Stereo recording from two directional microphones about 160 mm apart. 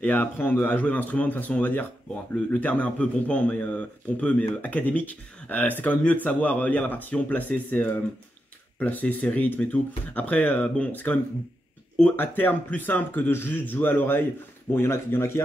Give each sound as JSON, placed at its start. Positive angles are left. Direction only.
{"t": 0.0, "sound": "speech", "side_deg": 10}